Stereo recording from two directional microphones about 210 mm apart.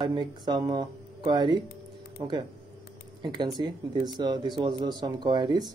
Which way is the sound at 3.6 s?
20° right (ahead or behind).